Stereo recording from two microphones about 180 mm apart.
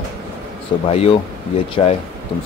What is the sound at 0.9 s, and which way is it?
Speech, 35° left (ahead or behind).